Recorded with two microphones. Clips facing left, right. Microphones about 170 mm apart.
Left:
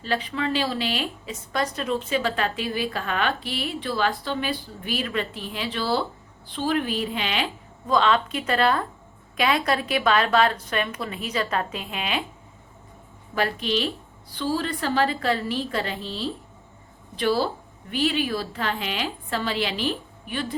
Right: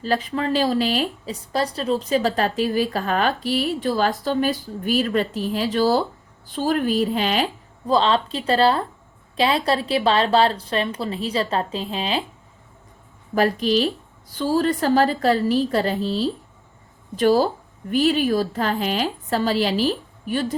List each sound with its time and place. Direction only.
0.0 s speech: 40° right (ahead or behind)
13.3 s speech: 40° right (ahead or behind)